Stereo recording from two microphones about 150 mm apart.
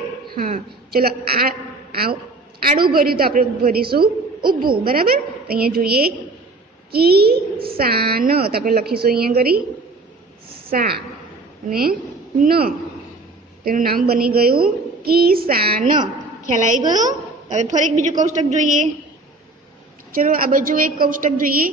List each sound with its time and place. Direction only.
0.9 s a woman's voice: 90° right
2.6 s a woman's voice: 80° right
10.7 s a woman's voice: 75° right (ahead or behind)
16.4 s a woman's voice: 60° right (ahead or behind)
20.1 s a woman's voice: 70° right (ahead or behind)